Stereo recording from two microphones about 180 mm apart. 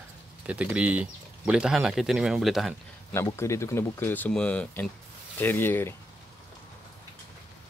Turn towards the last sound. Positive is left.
turn(degrees=10)  # may be behind; listen again after turning